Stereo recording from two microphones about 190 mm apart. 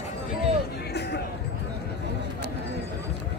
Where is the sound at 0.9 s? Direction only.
60° left (ahead or behind).